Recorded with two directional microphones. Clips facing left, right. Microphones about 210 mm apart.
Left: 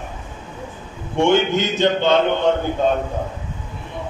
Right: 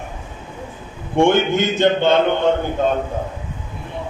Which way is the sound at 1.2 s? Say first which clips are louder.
Right 1 dB; 50° right (ahead or behind).